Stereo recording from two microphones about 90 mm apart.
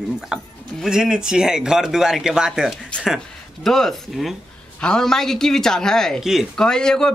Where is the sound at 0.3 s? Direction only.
10° right (ahead or behind).